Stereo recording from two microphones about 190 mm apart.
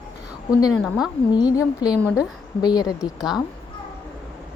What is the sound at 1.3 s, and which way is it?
A woman's voice, 20° left (ahead or behind).